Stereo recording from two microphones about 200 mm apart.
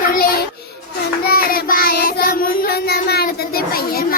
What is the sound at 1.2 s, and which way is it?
Child singing, 50° left (ahead or behind).